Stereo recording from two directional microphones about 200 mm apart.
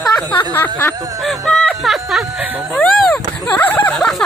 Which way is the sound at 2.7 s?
5° left (ahead or behind).